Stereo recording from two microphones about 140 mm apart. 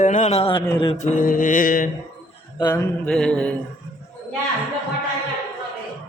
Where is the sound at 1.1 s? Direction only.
75° left (ahead or behind).